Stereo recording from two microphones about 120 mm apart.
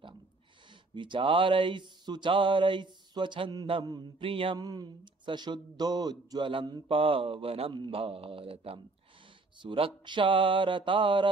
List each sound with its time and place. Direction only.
0.9 s speech: 40° right (ahead or behind)
4.6 s speech: 35° right (ahead or behind)